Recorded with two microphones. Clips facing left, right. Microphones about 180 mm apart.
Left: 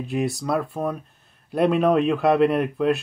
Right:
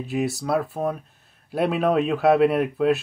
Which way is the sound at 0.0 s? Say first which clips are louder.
Even; centre (ahead or behind).